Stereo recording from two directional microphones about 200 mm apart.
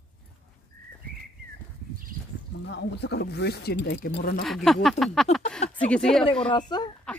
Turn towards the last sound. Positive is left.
turn(degrees=20)  # may be behind; listen again after turning